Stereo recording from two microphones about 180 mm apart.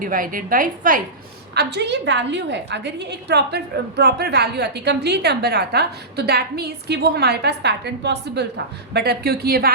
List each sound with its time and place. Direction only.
0.0 s a woman's voice: 50° right (ahead or behind)
1.5 s a woman's voice: 70° right (ahead or behind)